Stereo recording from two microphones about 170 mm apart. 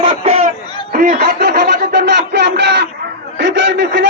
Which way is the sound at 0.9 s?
70° right (ahead or behind).